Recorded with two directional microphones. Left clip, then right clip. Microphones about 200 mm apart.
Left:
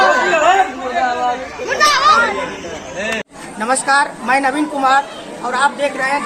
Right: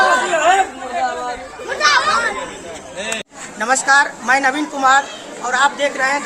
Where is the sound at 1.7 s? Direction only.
55° right (ahead or behind).